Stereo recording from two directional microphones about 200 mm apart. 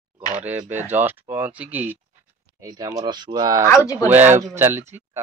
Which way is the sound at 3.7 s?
15° left (ahead or behind).